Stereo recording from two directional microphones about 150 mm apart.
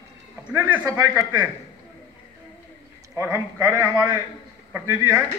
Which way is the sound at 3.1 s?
15° right (ahead or behind).